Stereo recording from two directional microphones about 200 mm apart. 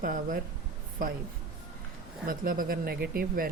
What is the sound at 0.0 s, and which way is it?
Speech, 45° right (ahead or behind).